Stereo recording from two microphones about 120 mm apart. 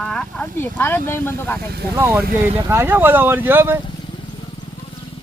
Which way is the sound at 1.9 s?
20° right (ahead or behind).